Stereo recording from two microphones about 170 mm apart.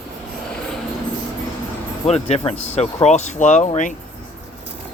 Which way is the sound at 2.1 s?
40° left (ahead or behind).